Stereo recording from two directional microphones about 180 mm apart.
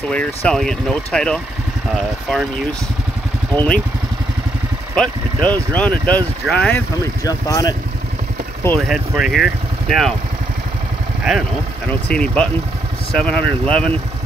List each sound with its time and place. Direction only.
0.1 s speech: 5° left (ahead or behind)
3.5 s speech: 5° left (ahead or behind)
4.9 s speech: 5° left (ahead or behind)
7.2 s speech: 20° left (ahead or behind)
8.6 s speech: centre (ahead or behind)
12.1 s speech: 5° left (ahead or behind)